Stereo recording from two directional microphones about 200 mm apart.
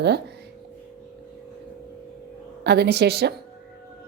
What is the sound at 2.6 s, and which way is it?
Speech, 55° right (ahead or behind).